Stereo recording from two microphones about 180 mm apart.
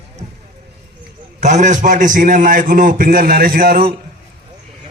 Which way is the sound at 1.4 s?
40° right (ahead or behind).